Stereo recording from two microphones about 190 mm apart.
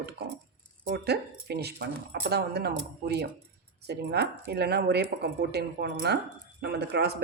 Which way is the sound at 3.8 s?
60° right (ahead or behind).